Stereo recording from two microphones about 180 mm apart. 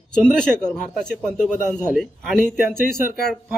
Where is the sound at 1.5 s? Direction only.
45° left (ahead or behind).